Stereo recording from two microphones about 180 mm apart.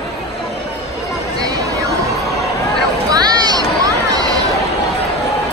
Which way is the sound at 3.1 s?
20° right (ahead or behind).